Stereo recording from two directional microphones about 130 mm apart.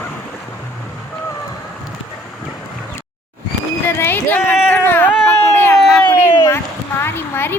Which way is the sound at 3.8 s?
15° left (ahead or behind).